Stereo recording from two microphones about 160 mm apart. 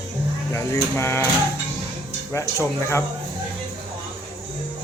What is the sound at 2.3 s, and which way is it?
Speech, 20° left (ahead or behind).